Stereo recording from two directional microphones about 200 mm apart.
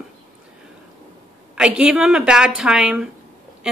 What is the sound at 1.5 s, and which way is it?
A woman's voice, 5° right (ahead or behind).